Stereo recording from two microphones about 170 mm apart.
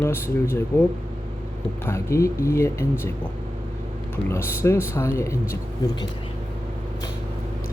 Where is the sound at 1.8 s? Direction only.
15° left (ahead or behind).